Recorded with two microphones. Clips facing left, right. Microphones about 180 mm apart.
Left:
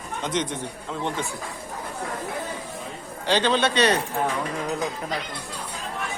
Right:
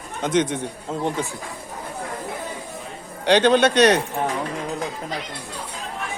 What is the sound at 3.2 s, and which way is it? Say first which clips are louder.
Speech: right 6 dB; 60° right (ahead or behind).